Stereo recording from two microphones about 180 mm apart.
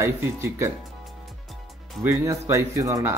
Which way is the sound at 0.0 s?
15° right (ahead or behind).